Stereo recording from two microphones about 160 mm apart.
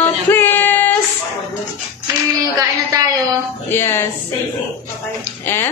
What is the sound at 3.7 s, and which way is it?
Speech, 15° left (ahead or behind).